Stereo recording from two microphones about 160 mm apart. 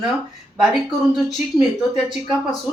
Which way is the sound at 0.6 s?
Centre (ahead or behind).